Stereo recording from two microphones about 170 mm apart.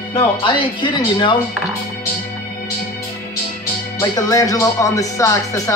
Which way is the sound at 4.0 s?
20° left (ahead or behind).